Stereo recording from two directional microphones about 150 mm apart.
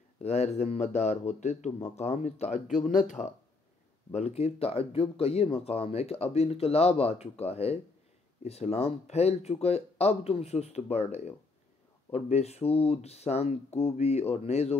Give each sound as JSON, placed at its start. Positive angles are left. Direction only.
{"t": 0.2, "sound": "speech", "side_deg": 45}